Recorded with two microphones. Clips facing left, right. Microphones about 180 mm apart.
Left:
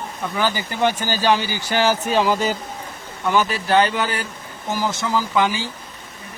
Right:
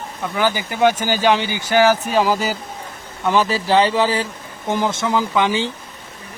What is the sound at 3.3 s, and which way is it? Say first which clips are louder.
Speech: right 2 dB; 30° right (ahead or behind).